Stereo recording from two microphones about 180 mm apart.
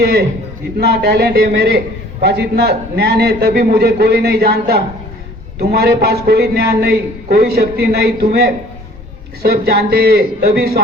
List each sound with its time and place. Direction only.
0.0 s a man's voice: 65° right (ahead or behind)